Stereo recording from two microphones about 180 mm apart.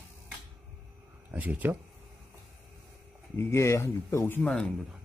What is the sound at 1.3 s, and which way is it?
Speech, 10° right (ahead or behind).